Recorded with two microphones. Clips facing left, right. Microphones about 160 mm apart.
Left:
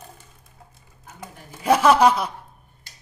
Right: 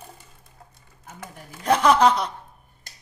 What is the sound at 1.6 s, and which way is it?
Speech, 5° left (ahead or behind).